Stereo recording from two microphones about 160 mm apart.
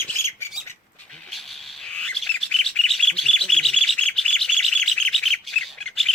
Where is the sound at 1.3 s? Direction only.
Centre (ahead or behind).